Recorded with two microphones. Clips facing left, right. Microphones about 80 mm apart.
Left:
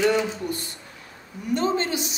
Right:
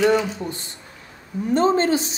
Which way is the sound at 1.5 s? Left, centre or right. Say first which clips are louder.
Right 6 dB; right.